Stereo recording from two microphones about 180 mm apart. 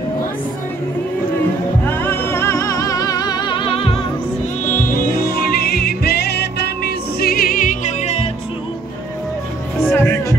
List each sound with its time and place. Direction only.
1.9 s music: 10° left (ahead or behind); by 3.9 s 30° left (ahead or behind)
4.6 s music: 50° left (ahead or behind)
9.8 s music: 10° left (ahead or behind)